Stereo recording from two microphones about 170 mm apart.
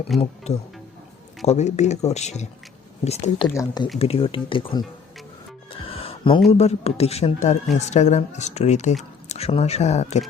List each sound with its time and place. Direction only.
0.2 s speech: 40° left (ahead or behind)
3.5 s speech: 20° left (ahead or behind)
3.9 s speech: 35° left (ahead or behind)
5.8 s music: 35° left (ahead or behind)
6.5 s speech: 35° left (ahead or behind)